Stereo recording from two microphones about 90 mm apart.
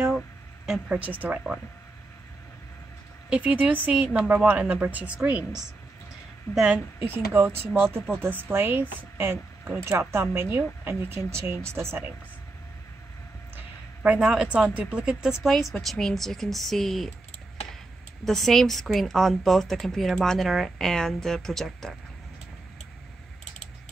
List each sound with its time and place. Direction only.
0.7 s a woman's voice: 15° right (ahead or behind)
3.3 s a woman's voice: 15° right (ahead or behind)
6.5 s a woman's voice: 10° right (ahead or behind)
7.0 s a woman's voice: 20° right (ahead or behind)
14.0 s a woman's voice: 10° right (ahead or behind)
18.2 s a woman's voice: 5° left (ahead or behind)